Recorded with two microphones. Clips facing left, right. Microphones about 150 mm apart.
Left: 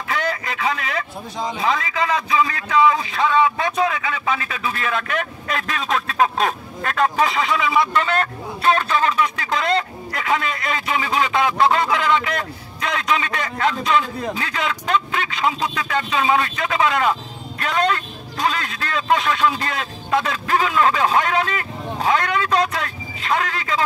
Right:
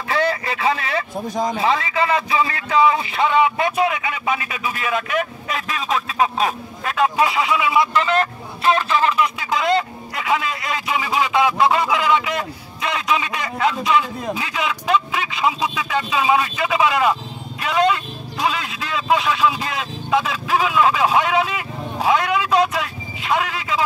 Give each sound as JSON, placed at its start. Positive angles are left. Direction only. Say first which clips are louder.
{"t": 0.1, "sound": "speech", "louder": "right 4 dB", "side_deg": -30}
{"t": 1.2, "sound": "speech", "louder": "right 5 dB", "side_deg": -45}
{"t": 1.6, "sound": "a man's voice", "louder": "even", "side_deg": -30}
{"t": 9.4, "sound": "a man's voice", "louder": "right 2 dB", "side_deg": -5}